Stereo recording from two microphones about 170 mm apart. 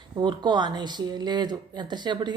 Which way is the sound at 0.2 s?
25° right (ahead or behind).